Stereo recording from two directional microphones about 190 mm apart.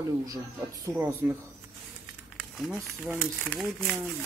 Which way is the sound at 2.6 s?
Centre (ahead or behind).